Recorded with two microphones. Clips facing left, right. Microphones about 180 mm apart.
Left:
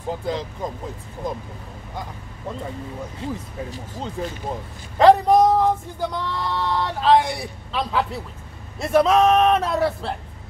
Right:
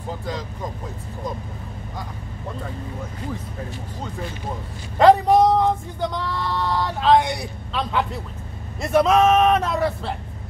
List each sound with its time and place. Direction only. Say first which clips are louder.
0.3 s speech: left 3 dB; 25° left (ahead or behind)
3.2 s speech: left 2 dB; 25° left (ahead or behind)
4.9 s speech: even; centre (ahead or behind)